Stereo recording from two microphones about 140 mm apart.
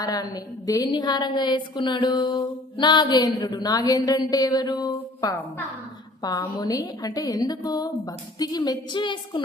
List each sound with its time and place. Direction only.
0.0 s a woman's voice: 25° left (ahead or behind)